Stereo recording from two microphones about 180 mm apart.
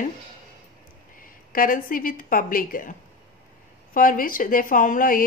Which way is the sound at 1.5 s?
50° left (ahead or behind).